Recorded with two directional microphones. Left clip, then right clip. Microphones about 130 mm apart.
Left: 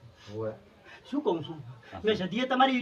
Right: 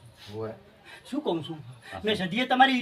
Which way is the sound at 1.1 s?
20° right (ahead or behind).